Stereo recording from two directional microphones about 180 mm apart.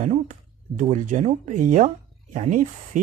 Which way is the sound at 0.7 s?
40° right (ahead or behind).